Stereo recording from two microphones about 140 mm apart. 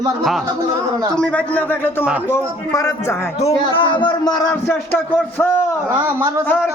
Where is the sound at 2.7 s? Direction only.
20° left (ahead or behind).